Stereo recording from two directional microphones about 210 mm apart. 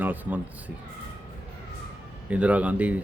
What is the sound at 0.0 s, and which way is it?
Speech, 10° right (ahead or behind).